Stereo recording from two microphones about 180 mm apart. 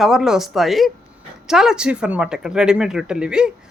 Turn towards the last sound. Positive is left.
turn(degrees=-5)  # may be behind; listen again after turning